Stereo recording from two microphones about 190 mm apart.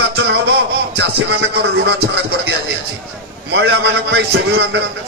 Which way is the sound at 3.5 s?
65° right (ahead or behind).